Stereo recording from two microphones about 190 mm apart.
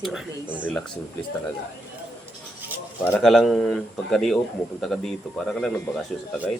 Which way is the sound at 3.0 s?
10° left (ahead or behind).